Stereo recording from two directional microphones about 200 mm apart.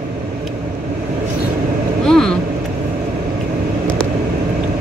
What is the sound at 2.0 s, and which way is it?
Vehicle, 5° left (ahead or behind).